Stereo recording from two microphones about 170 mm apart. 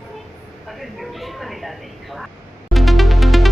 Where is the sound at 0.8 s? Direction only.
Centre (ahead or behind).